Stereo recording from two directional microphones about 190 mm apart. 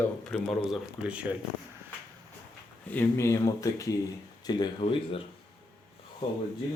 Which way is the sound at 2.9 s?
10° left (ahead or behind).